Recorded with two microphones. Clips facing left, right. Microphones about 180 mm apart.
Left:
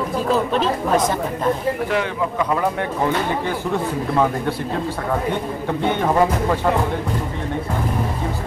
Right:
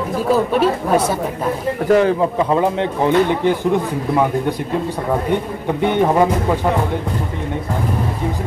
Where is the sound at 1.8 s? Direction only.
40° right (ahead or behind); by 4.5 s 15° right (ahead or behind).